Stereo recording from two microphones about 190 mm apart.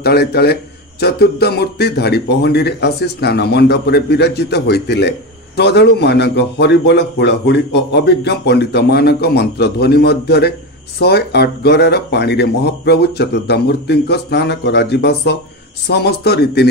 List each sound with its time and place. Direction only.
0.0 s speech: 55° left (ahead or behind)